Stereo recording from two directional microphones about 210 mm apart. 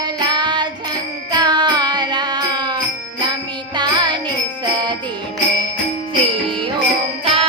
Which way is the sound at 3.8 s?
20° right (ahead or behind).